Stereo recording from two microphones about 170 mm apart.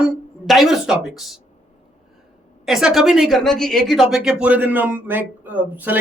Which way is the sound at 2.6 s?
Centre (ahead or behind).